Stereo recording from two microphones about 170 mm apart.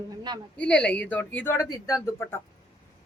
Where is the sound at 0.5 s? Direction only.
5° left (ahead or behind).